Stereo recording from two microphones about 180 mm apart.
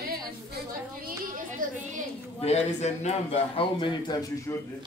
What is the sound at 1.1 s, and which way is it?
Speech, 50° right (ahead or behind).